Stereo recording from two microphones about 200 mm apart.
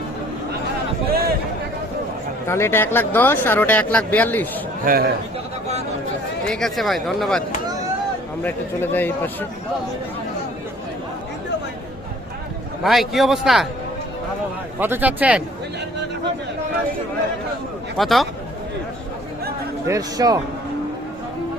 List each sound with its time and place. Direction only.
1.1 s a sound: 50° right (ahead or behind)
2.5 s speech: 10° left (ahead or behind)
4.9 s a man's voice: 45° right (ahead or behind)
6.5 s speech: centre (ahead or behind)
8.4 s speech: 10° left (ahead or behind)
12.8 s speech: centre (ahead or behind)
14.8 s a man's voice: 10° right (ahead or behind)
17.9 s speech: centre (ahead or behind)
19.9 s a man's voice: 20° right (ahead or behind)